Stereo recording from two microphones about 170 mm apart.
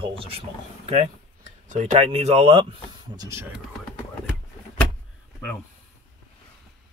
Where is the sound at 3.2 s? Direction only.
15° right (ahead or behind).